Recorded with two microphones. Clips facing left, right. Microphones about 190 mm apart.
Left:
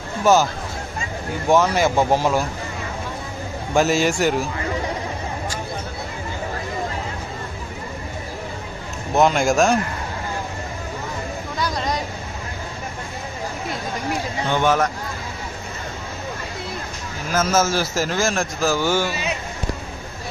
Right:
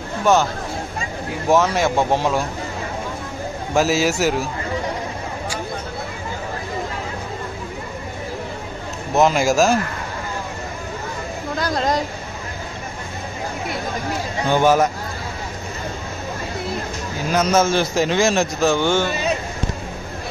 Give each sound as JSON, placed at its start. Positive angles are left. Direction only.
{"t": 0.2, "sound": "a man's voice", "side_deg": 5}
{"t": 1.5, "sound": "a man's voice", "side_deg": 0}
{"t": 3.7, "sound": "a man's voice", "side_deg": 0}
{"t": 9.1, "sound": "a man's voice", "side_deg": 0}
{"t": 11.5, "sound": "a sound", "side_deg": -50}
{"t": 14.5, "sound": "speech", "side_deg": -10}
{"t": 17.3, "sound": "a man's voice", "side_deg": 5}